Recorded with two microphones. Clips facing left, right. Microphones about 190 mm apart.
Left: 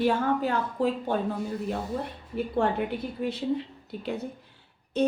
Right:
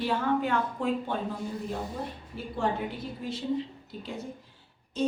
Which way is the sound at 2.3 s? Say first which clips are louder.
Left 5 dB; 60° left (ahead or behind).